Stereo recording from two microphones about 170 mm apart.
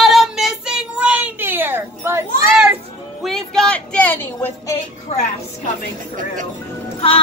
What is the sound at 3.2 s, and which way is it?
Speech, 5° left (ahead or behind).